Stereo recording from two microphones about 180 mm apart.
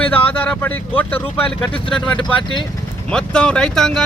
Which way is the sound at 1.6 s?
25° left (ahead or behind).